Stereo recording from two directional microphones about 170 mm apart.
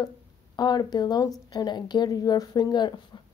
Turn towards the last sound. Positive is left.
turn(degrees=25)  # may be behind; listen again after turning